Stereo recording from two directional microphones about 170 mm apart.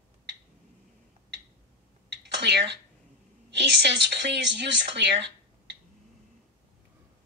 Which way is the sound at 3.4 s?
90° right.